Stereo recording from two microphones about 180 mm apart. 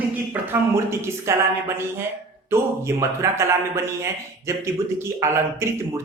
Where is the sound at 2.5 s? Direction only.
15° right (ahead or behind).